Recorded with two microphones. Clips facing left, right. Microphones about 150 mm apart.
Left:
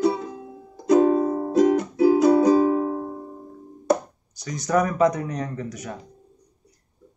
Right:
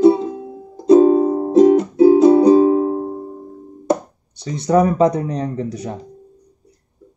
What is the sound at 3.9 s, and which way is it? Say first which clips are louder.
Speech: right 2 dB; 30° right (ahead or behind).